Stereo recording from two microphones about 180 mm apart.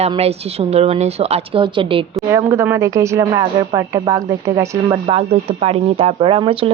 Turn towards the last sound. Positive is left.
turn(degrees=-30)  # may be behind; listen again after turning